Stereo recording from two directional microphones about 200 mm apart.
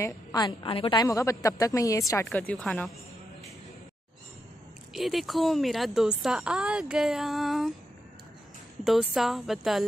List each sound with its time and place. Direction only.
0.0 s a woman's voice: 20° left (ahead or behind)
2.2 s a woman's voice: 5° left (ahead or behind)
4.9 s a woman's voice: centre (ahead or behind)
8.8 s a woman's voice: centre (ahead or behind)